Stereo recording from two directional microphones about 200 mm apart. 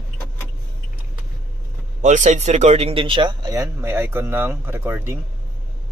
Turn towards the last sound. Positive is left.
turn(degrees=-10)  # may be behind; listen again after turning